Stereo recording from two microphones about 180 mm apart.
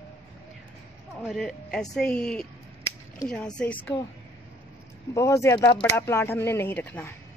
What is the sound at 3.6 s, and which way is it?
Speech, 10° left (ahead or behind).